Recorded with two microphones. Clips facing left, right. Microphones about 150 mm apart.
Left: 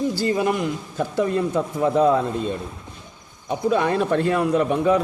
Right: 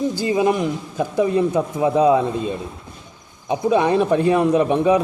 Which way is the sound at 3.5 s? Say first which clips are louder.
Right 3 dB; 20° right (ahead or behind).